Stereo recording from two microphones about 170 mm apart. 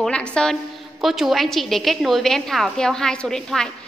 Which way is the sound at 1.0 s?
Centre (ahead or behind).